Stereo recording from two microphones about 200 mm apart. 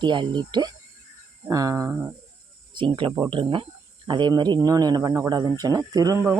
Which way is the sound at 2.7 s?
25° right (ahead or behind).